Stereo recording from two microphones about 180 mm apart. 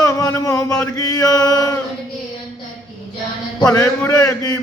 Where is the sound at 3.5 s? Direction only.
20° left (ahead or behind).